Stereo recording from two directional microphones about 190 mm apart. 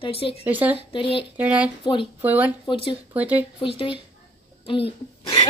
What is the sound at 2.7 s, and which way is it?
Speech, 30° left (ahead or behind).